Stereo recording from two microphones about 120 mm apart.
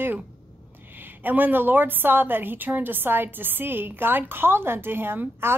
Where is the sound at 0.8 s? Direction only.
15° right (ahead or behind).